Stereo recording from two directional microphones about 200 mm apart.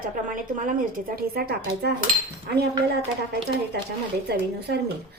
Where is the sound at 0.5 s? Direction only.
40° right (ahead or behind).